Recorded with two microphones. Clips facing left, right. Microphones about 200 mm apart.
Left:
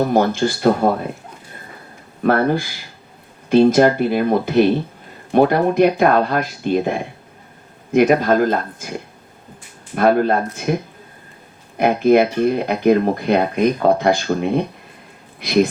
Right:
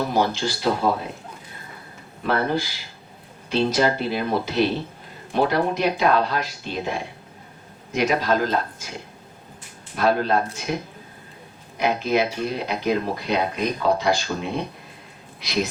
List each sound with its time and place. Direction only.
0.0 s speech: 50° left (ahead or behind)
2.2 s speech: 55° left (ahead or behind)
11.8 s speech: 55° left (ahead or behind)